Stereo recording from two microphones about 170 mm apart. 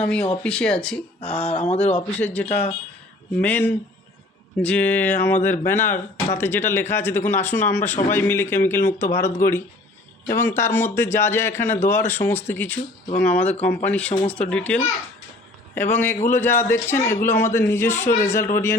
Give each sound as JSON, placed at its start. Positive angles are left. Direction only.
{"t": 0.0, "sound": "speech", "side_deg": 5}